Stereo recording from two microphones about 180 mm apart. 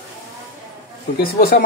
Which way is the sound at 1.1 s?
65° left (ahead or behind).